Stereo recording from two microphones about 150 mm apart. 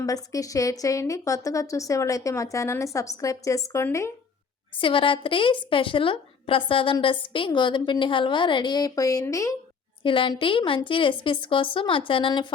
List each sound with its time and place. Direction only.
0.0 s a woman's voice: 20° left (ahead or behind)
4.8 s a woman's voice: 35° left (ahead or behind)
10.0 s a woman's voice: 35° left (ahead or behind)